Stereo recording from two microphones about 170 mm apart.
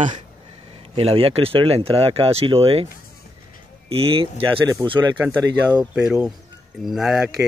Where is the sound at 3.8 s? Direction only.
35° right (ahead or behind).